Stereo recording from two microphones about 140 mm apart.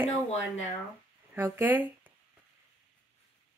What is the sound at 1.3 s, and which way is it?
Speech, 15° right (ahead or behind).